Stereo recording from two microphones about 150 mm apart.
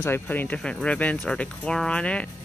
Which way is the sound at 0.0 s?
15° left (ahead or behind).